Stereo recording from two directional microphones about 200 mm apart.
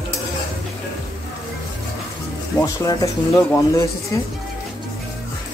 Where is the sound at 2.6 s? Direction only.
15° left (ahead or behind).